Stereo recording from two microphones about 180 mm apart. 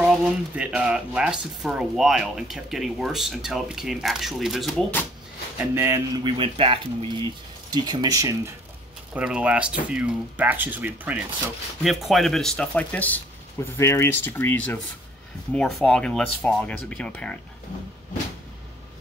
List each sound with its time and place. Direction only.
0.1 s speech: 5° right (ahead or behind)
5.8 s speech: 15° right (ahead or behind)
6.2 s speech: 30° right (ahead or behind)
9.1 s speech: 5° right (ahead or behind)